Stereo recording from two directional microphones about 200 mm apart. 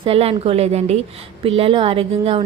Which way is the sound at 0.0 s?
30° right (ahead or behind).